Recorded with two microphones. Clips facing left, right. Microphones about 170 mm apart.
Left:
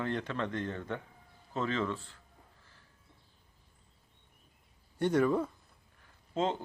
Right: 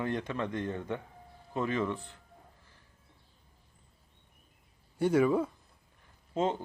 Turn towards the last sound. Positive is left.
turn(degrees=-10)  # may be behind; listen again after turning